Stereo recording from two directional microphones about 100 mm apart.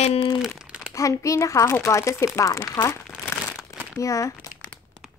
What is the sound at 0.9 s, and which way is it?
A woman's voice, 30° left (ahead or behind).